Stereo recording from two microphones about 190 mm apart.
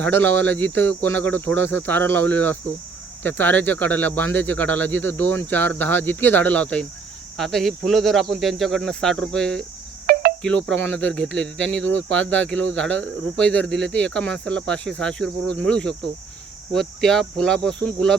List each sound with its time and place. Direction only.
0.0 s speech: 10° left (ahead or behind)
10.1 s cricket: 55° right (ahead or behind)
10.4 s speech: 5° left (ahead or behind)